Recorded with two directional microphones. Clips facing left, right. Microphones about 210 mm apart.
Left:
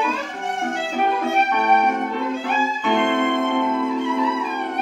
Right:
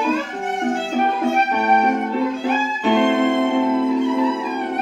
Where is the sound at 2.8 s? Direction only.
30° right (ahead or behind).